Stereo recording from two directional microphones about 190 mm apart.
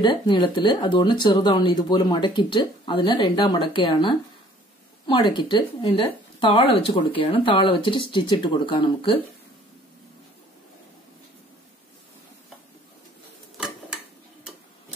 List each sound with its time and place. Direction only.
0.0 s speech: 25° left (ahead or behind)